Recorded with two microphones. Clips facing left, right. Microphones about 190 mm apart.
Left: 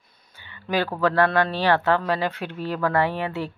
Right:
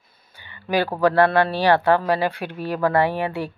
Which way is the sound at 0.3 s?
15° right (ahead or behind).